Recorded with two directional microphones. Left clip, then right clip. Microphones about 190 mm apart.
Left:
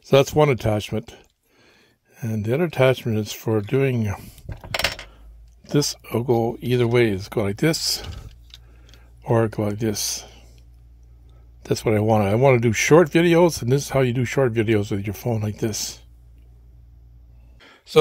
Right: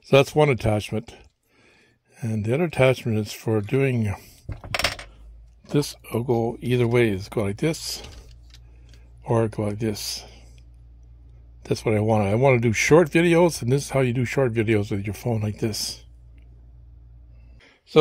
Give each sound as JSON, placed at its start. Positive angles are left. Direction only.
{"t": 0.0, "sound": "speech", "side_deg": 5}
{"t": 8.1, "sound": "vehicle", "side_deg": 5}
{"t": 9.2, "sound": "speech", "side_deg": 10}
{"t": 11.6, "sound": "speech", "side_deg": 10}
{"t": 17.6, "sound": "a sound", "side_deg": 20}